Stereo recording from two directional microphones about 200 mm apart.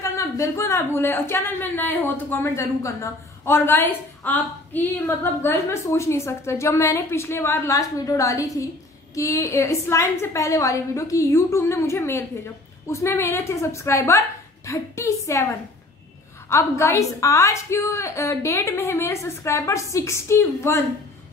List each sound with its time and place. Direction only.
0.1 s a woman's voice: 15° left (ahead or behind)
16.4 s a woman's voice: 15° left (ahead or behind)